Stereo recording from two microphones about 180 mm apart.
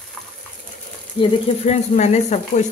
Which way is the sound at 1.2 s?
40° left (ahead or behind).